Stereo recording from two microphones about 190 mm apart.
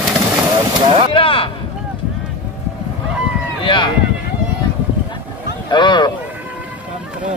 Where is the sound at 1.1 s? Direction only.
30° left (ahead or behind).